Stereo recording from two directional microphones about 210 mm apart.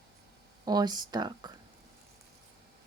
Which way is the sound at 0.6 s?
20° right (ahead or behind).